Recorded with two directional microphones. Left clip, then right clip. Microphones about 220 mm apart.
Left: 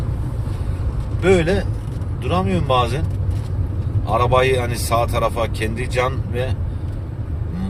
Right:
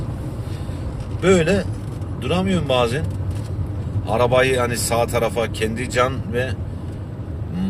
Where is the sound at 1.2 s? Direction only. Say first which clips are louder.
Even; 10° right (ahead or behind).